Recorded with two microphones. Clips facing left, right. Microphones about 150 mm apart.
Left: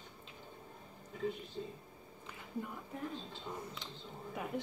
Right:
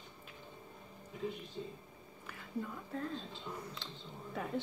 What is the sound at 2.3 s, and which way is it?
Speech, 15° left (ahead or behind).